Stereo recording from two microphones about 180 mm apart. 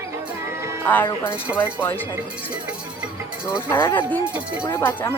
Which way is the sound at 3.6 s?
10° left (ahead or behind).